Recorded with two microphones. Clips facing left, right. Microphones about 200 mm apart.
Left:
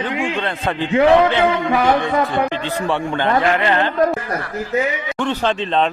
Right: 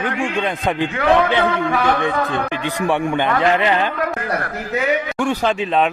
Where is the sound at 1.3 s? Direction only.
20° left (ahead or behind).